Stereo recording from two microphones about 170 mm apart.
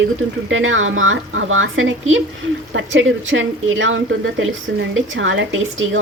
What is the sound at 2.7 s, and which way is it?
A woman's voice, 90° right.